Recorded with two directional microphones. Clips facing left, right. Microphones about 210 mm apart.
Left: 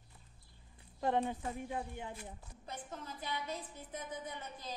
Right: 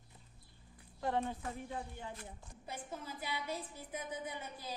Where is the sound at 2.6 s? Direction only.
10° right (ahead or behind).